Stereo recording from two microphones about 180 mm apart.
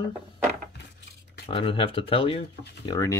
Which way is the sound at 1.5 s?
30° left (ahead or behind).